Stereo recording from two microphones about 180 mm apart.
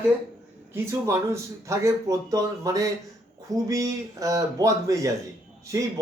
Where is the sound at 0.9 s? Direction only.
15° right (ahead or behind).